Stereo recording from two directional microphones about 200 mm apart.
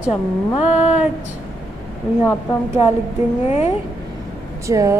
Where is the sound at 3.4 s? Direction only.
30° left (ahead or behind).